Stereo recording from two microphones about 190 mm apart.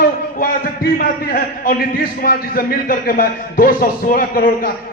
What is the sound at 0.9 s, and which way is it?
A man's voice, 50° left (ahead or behind).